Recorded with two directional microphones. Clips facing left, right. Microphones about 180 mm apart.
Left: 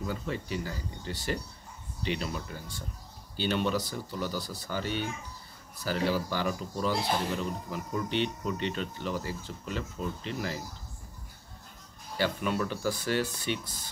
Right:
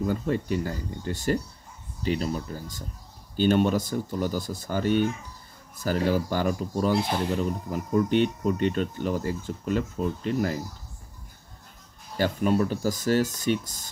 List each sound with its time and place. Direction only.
0.0 s speech: 50° right (ahead or behind)
12.2 s speech: 40° right (ahead or behind)